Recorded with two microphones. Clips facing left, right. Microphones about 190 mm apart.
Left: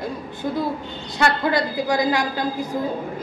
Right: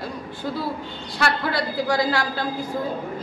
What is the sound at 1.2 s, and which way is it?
A woman's voice, 20° left (ahead or behind).